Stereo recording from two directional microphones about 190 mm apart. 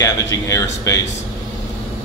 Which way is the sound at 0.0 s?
20° left (ahead or behind).